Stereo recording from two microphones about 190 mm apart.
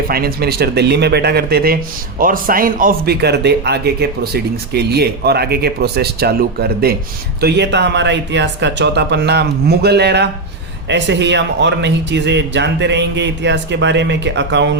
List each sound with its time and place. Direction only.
0.1 s speech: 55° right (ahead or behind)